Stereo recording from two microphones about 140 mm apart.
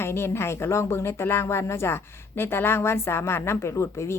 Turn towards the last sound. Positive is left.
turn(degrees=20)  # may be behind; listen again after turning